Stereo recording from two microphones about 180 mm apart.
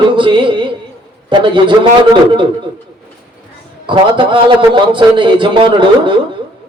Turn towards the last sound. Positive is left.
turn(degrees=-25)  # may be behind; listen again after turning